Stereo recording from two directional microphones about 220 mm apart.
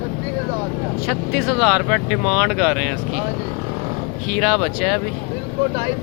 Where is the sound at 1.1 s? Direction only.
Centre (ahead or behind).